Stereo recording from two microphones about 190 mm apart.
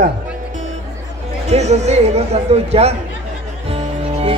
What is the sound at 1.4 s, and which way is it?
Speech, 35° right (ahead or behind).